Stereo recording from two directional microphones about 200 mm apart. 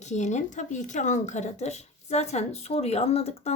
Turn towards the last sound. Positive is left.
turn(degrees=30)  # may be behind; listen again after turning